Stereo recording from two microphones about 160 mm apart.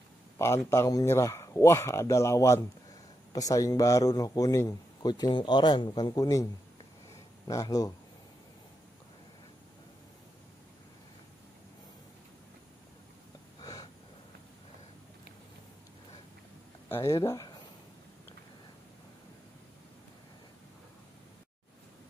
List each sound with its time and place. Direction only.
0.4 s a man's voice: 15° left (ahead or behind)
7.4 s a man's voice: 20° left (ahead or behind)
13.6 s a sound: 25° left (ahead or behind)
16.9 s a man's voice: 20° left (ahead or behind)